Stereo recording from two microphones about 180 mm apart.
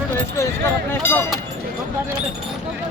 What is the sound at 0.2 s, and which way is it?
Speech, 15° left (ahead or behind).